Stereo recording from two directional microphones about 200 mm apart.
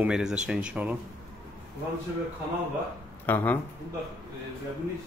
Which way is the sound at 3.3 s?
10° left (ahead or behind).